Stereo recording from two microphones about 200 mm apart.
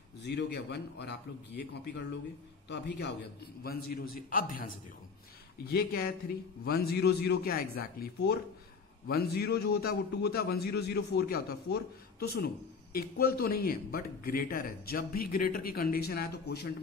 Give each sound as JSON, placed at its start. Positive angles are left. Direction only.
{"t": 0.2, "sound": "a man's voice", "side_deg": 55}
{"t": 3.6, "sound": "a man's voice", "side_deg": 50}
{"t": 5.7, "sound": "a man's voice", "side_deg": 50}